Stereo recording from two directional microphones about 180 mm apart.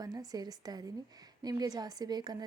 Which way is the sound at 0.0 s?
20° right (ahead or behind).